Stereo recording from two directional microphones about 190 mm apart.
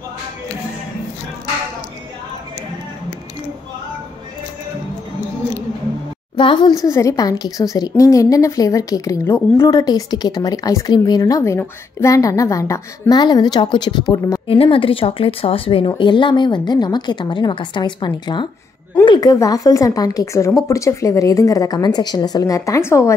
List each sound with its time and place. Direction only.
6.3 s a woman's voice: 25° left (ahead or behind)